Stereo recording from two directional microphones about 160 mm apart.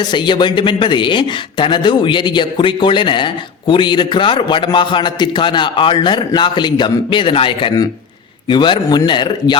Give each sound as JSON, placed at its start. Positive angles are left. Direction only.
{"t": 0.0, "sound": "speech", "side_deg": 30}